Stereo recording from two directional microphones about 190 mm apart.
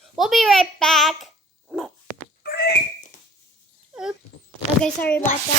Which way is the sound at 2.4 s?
55° left (ahead or behind).